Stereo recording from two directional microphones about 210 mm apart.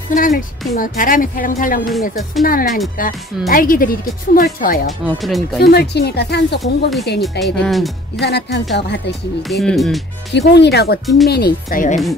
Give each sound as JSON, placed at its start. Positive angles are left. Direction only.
{"t": 0.1, "sound": "speech", "side_deg": 40}
{"t": 4.8, "sound": "speech", "side_deg": 0}
{"t": 5.6, "sound": "speech", "side_deg": 50}
{"t": 6.6, "sound": "speech", "side_deg": 0}
{"t": 8.2, "sound": "speech", "side_deg": 50}
{"t": 9.5, "sound": "speech", "side_deg": 0}
{"t": 10.3, "sound": "speech", "side_deg": 55}